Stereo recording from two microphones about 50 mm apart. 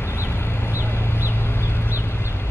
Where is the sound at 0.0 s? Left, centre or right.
Left.